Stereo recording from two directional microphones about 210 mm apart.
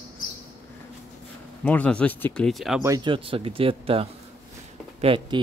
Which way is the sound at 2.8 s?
20° right (ahead or behind).